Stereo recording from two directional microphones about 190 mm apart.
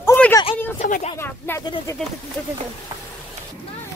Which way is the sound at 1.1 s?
10° left (ahead or behind).